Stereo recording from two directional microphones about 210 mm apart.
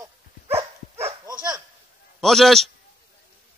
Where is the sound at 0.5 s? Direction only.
30° right (ahead or behind).